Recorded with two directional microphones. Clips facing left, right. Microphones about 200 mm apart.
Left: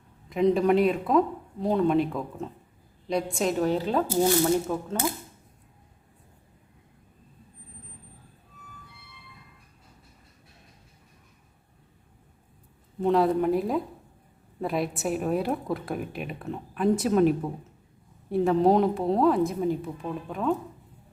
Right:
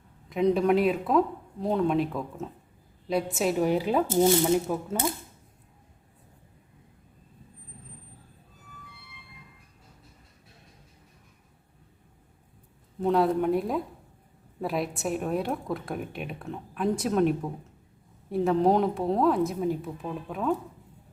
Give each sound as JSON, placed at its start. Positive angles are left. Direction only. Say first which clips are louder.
{"t": 0.3, "sound": "a woman's voice", "louder": "left 1 dB", "side_deg": 0}
{"t": 4.4, "sound": "a woman's voice", "louder": "even", "side_deg": -5}
{"t": 13.0, "sound": "a woman's voice", "louder": "left 1 dB", "side_deg": 0}